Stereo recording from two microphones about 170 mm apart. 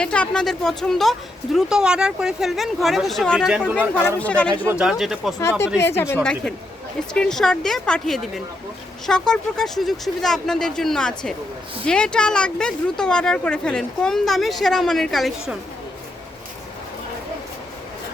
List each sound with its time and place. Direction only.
0.0 s speech: 5° left (ahead or behind)
4.7 s speech: 5° right (ahead or behind)
5.4 s speech: 15° left (ahead or behind)
7.1 s speech: 5° left (ahead or behind)